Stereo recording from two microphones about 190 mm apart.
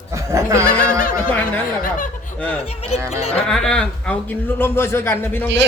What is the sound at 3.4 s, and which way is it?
A woman's voice, 5° left (ahead or behind).